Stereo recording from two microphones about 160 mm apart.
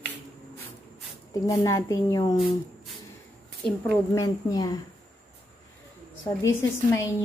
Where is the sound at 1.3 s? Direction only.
20° left (ahead or behind).